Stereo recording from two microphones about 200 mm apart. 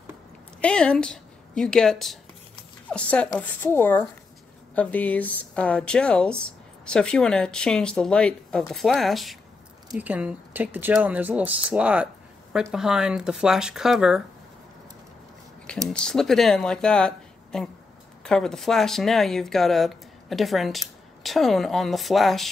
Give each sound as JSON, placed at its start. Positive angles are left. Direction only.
{"t": 0.6, "sound": "speech", "side_deg": 5}
{"t": 15.9, "sound": "speech", "side_deg": 5}